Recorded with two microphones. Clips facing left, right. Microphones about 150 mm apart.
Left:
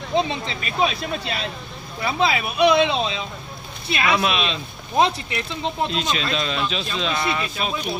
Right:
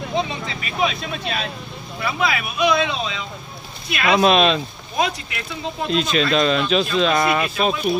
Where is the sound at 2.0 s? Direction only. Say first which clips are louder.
Left 1 dB; 30° left (ahead or behind).